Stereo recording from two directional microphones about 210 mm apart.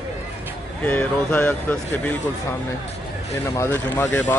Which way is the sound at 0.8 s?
5° left (ahead or behind).